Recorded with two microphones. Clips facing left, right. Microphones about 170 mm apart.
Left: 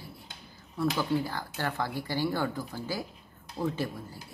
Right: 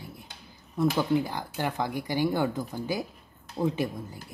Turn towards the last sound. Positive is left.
turn(degrees=-15)  # may be behind; listen again after turning